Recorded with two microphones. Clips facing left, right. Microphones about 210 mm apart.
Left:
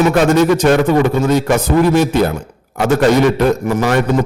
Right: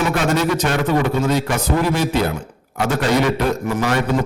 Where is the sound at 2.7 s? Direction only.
45° left (ahead or behind).